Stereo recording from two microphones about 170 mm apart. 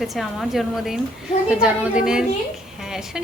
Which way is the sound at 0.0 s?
Centre (ahead or behind).